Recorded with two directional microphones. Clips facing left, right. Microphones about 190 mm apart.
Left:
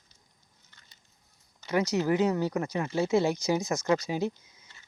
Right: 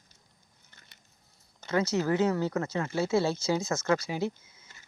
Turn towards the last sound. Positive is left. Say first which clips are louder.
# left 1 dB
turn(degrees=15)  # may be behind; listen again after turning